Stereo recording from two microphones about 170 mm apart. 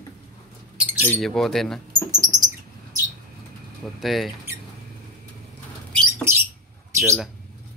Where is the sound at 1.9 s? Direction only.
25° right (ahead or behind).